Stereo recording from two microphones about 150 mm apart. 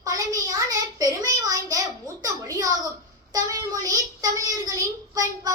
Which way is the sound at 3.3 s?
25° right (ahead or behind).